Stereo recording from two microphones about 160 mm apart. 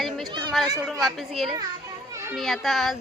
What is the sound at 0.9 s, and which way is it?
Speech, centre (ahead or behind).